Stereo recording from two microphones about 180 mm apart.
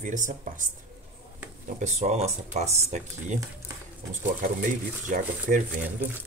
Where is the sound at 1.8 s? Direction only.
40° right (ahead or behind).